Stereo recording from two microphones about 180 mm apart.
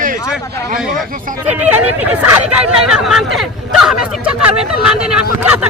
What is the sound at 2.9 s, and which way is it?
Speech, centre (ahead or behind).